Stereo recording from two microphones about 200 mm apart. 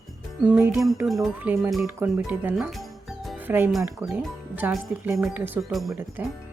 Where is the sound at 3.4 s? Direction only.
10° right (ahead or behind).